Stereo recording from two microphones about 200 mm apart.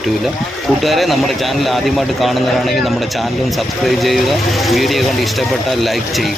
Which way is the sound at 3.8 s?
Centre (ahead or behind).